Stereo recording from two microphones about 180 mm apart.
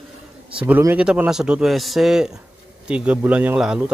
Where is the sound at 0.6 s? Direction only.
10° right (ahead or behind).